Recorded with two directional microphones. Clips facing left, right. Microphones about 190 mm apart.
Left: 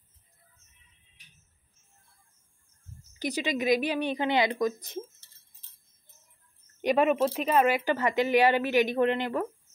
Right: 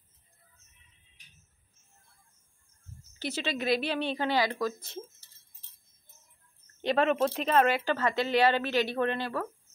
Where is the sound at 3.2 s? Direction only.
15° left (ahead or behind).